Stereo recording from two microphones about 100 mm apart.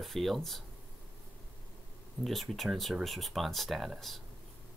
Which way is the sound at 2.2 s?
Centre (ahead or behind).